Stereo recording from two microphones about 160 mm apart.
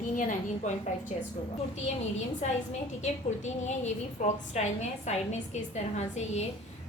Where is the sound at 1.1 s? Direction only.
40° left (ahead or behind).